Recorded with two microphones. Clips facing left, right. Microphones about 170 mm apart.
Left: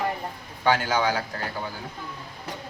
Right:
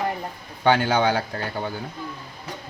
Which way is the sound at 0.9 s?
60° right (ahead or behind).